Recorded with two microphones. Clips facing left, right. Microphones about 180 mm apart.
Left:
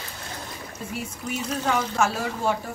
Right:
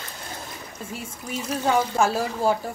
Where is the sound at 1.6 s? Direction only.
30° right (ahead or behind).